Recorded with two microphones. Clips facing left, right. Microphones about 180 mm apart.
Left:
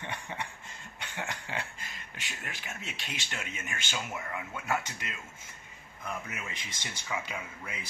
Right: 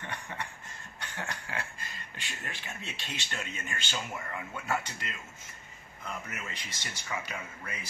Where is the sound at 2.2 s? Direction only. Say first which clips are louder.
Even; 10° left (ahead or behind).